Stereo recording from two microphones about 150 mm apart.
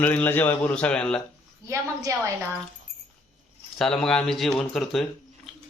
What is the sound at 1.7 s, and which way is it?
Speech, 20° right (ahead or behind).